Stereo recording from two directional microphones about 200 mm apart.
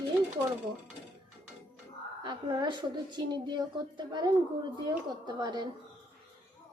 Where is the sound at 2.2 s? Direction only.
25° right (ahead or behind).